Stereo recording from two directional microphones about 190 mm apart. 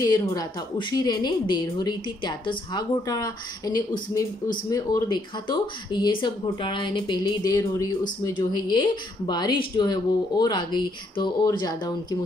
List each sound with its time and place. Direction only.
0.0 s a woman's voice: 20° left (ahead or behind)